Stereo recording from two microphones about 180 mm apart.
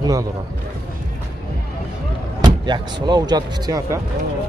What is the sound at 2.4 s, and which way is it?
Speech, 25° right (ahead or behind).